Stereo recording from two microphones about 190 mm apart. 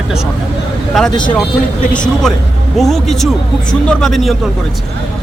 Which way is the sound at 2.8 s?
Centre (ahead or behind).